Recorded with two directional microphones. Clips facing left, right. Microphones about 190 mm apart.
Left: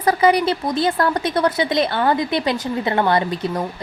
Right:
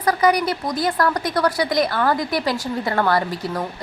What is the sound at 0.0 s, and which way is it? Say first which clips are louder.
Speech: left 2 dB; 25° left (ahead or behind).